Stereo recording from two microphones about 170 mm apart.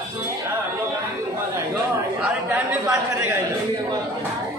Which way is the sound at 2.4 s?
15° right (ahead or behind).